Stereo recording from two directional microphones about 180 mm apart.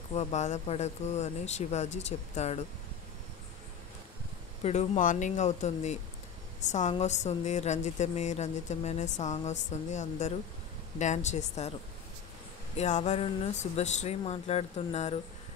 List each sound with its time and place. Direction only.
0.1 s a woman's voice: 40° left (ahead or behind)
4.6 s a woman's voice: 40° left (ahead or behind)
12.7 s a woman's voice: 40° left (ahead or behind)